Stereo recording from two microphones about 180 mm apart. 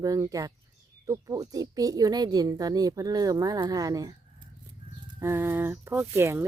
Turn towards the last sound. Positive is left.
turn(degrees=-15)  # may be behind; listen again after turning